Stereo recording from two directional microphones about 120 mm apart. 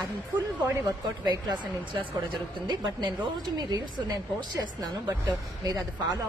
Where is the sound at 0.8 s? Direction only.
35° right (ahead or behind).